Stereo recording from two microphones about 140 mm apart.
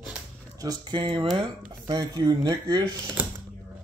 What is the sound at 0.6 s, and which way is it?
Speech, 30° right (ahead or behind).